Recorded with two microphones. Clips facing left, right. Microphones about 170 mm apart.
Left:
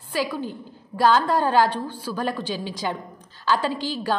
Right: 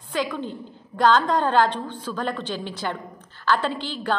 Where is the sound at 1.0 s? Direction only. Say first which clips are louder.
Even; 10° left (ahead or behind).